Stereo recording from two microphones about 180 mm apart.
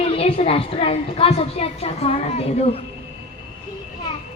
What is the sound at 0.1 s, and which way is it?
A woman's voice, 30° left (ahead or behind).